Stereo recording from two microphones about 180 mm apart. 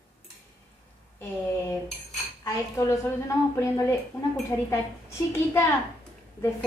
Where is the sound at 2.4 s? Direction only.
15° left (ahead or behind).